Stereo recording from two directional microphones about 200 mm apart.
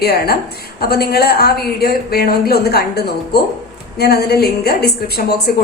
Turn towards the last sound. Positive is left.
turn(degrees=55)  # may be behind; listen again after turning